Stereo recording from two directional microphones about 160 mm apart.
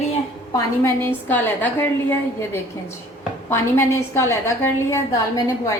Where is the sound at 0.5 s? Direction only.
15° left (ahead or behind).